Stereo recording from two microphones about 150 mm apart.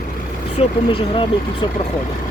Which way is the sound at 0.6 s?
35° left (ahead or behind).